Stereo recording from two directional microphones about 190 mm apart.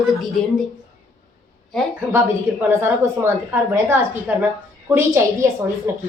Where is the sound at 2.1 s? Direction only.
10° right (ahead or behind).